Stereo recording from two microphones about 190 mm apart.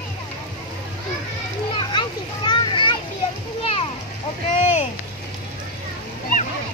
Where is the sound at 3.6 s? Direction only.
30° left (ahead or behind).